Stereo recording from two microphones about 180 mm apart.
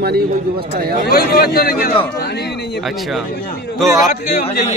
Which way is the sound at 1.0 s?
60° left (ahead or behind).